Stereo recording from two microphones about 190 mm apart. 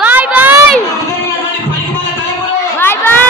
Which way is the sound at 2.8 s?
10° left (ahead or behind).